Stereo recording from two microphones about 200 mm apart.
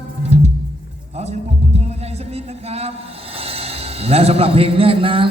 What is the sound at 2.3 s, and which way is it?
A man's voice, 30° right (ahead or behind).